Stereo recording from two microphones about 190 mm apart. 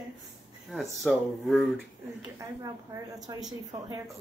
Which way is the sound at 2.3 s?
15° right (ahead or behind).